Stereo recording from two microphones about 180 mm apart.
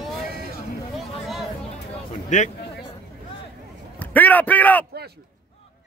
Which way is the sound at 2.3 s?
40° left (ahead or behind).